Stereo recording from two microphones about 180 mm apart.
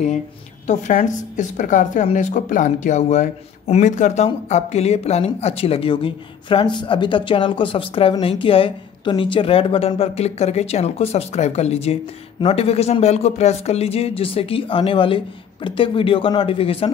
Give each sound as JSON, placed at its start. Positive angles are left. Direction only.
{"t": 0.7, "sound": "speech", "side_deg": 45}